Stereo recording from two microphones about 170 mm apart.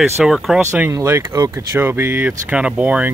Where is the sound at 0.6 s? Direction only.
15° right (ahead or behind).